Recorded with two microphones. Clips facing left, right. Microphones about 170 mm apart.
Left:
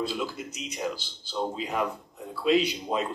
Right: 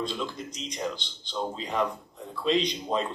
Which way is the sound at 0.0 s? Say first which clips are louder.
Left 1 dB; 5° left (ahead or behind).